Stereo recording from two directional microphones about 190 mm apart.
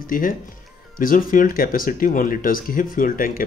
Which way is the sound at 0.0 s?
45° left (ahead or behind).